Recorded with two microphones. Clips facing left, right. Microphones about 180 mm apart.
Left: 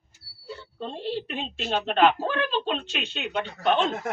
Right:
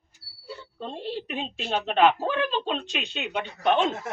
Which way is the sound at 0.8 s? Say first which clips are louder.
Left 2 dB; 10° right (ahead or behind).